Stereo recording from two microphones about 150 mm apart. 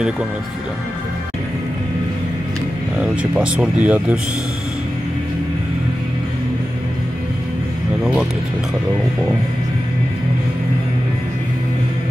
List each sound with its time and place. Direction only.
3.0 s speech: 5° right (ahead or behind)